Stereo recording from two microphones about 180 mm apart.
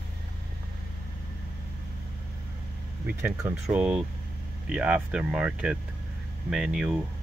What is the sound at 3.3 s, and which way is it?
Speech, 20° right (ahead or behind).